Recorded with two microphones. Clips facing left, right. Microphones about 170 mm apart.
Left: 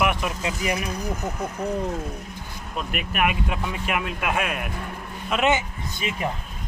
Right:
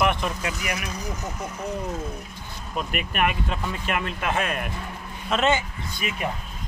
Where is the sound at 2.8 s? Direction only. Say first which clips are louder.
Even; centre (ahead or behind).